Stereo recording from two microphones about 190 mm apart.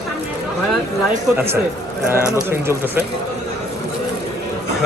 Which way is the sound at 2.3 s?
15° right (ahead or behind).